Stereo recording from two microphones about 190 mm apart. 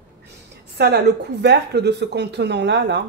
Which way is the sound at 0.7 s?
65° right (ahead or behind).